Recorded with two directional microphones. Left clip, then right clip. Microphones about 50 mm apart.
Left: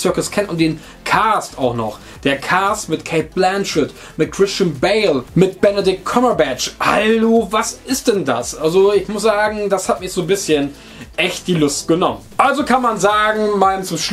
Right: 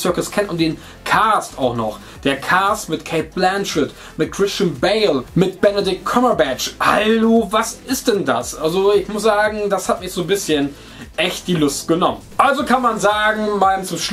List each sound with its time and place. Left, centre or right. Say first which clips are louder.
0.0 s speech: left 1 dB; left